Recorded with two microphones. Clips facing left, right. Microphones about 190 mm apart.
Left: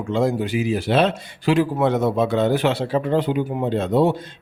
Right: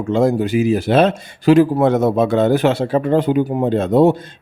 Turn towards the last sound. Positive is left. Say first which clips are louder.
# right 5 dB
turn(degrees=-45)  # may be behind; listen again after turning